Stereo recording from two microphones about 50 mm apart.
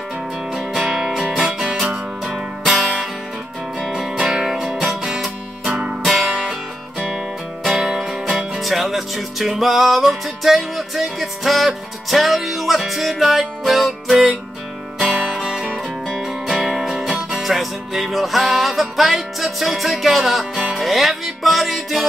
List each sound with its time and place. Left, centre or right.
0.8 s music: centre
4.2 s music: centre
4.8 s music: right
6.0 s music: centre
7.7 s music: centre
8.1 s music: centre
8.5 s music: centre